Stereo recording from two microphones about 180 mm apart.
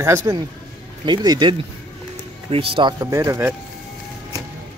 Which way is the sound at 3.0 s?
15° right (ahead or behind).